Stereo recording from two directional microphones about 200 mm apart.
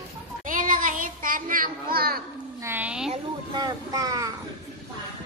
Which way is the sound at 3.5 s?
20° right (ahead or behind).